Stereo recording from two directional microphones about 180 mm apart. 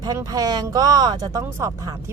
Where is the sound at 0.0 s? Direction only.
20° right (ahead or behind).